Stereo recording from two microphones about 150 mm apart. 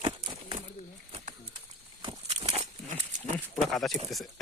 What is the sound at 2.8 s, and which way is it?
Pig, 55° right (ahead or behind).